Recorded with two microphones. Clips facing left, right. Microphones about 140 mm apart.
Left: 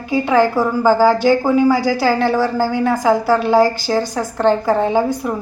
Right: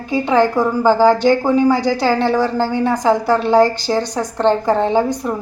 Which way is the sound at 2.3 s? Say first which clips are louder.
Even; 20° right (ahead or behind).